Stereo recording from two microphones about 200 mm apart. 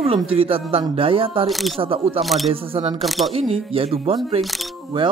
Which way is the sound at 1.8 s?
30° right (ahead or behind).